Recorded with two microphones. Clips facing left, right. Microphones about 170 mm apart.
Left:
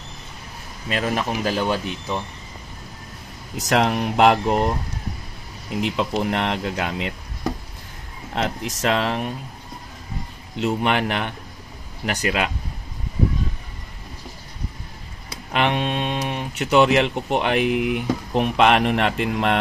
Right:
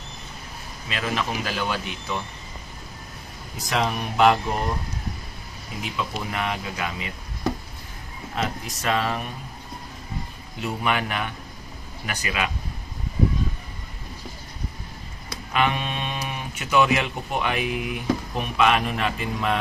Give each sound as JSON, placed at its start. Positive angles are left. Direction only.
{"t": 0.8, "sound": "speech", "side_deg": 45}
{"t": 3.5, "sound": "speech", "side_deg": 80}
{"t": 5.8, "sound": "speech", "side_deg": 80}
{"t": 8.4, "sound": "speech", "side_deg": 85}
{"t": 10.5, "sound": "speech", "side_deg": 75}
{"t": 15.5, "sound": "speech", "side_deg": 70}